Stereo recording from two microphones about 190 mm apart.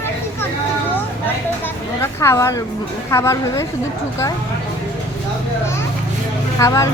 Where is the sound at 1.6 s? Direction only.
15° left (ahead or behind).